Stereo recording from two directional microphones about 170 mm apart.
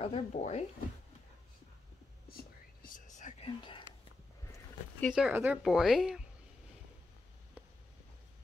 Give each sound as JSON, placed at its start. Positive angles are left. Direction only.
{"t": 0.0, "sound": "speech", "side_deg": 35}
{"t": 2.3, "sound": "whispering", "side_deg": 55}
{"t": 5.1, "sound": "speech", "side_deg": -10}